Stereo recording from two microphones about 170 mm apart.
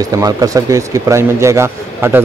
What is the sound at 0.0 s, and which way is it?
Speech, 20° right (ahead or behind).